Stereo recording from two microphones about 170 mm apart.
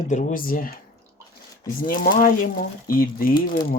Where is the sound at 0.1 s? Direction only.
45° left (ahead or behind).